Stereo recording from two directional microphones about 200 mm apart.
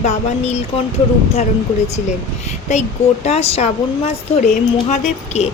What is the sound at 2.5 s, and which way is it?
Speech, 35° left (ahead or behind).